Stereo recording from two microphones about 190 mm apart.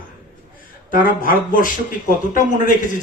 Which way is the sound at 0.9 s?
45° left (ahead or behind).